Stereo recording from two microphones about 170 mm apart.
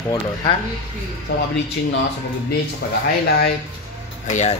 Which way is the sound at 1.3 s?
75° left (ahead or behind).